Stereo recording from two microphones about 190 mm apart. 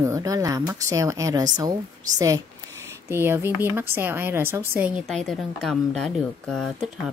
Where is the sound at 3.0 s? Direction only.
10° right (ahead or behind).